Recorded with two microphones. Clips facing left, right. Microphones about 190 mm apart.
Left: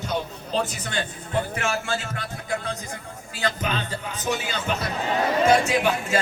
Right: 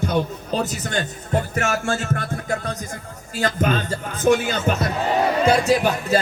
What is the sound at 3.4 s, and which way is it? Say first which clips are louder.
A man's voice: right 6 dB; 45° right (ahead or behind).